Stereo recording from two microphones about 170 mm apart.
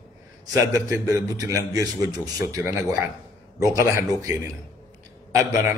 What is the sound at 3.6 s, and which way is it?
Speech, 20° right (ahead or behind).